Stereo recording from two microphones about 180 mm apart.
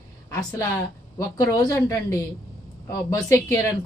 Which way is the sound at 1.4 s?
20° left (ahead or behind).